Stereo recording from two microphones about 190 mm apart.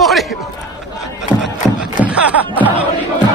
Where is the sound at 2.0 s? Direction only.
5° right (ahead or behind).